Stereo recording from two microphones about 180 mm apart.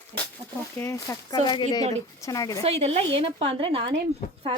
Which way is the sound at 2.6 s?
35° right (ahead or behind).